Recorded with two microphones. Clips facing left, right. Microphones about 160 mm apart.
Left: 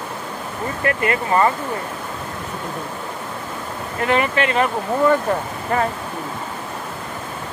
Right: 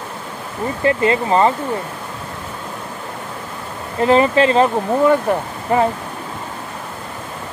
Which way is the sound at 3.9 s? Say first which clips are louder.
Right 6 dB; 30° right (ahead or behind).